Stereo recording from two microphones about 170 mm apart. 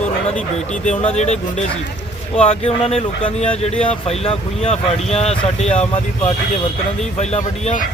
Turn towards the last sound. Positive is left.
turn(degrees=40)  # may be behind; listen again after turning